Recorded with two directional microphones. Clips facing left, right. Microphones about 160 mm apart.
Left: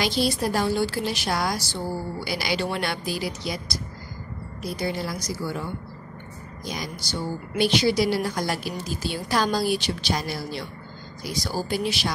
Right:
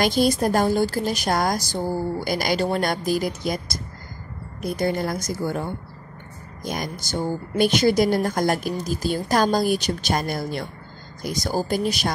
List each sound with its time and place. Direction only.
0.0 s a woman's voice: 50° right (ahead or behind)